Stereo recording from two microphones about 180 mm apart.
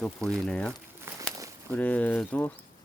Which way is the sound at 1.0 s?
15° right (ahead or behind).